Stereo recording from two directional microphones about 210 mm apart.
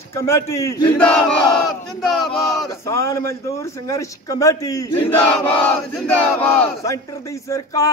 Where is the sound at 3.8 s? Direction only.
15° left (ahead or behind).